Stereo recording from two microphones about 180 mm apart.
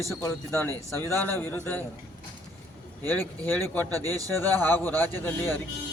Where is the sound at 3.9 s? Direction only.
20° right (ahead or behind).